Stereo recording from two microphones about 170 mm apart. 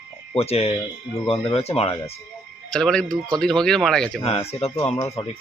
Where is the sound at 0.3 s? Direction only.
35° left (ahead or behind).